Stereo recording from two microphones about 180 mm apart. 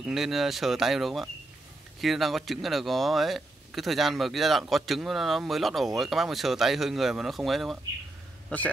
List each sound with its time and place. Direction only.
0.0 s a man's voice: centre (ahead or behind)